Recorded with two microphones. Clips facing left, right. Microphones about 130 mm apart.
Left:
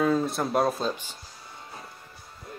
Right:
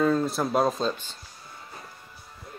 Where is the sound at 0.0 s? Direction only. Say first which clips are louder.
Right 1 dB; 5° left (ahead or behind).